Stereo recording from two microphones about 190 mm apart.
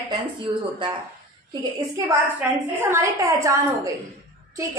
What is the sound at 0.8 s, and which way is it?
A woman's voice, 25° right (ahead or behind).